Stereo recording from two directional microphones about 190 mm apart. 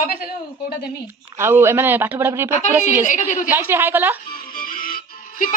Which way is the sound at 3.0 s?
40° left (ahead or behind).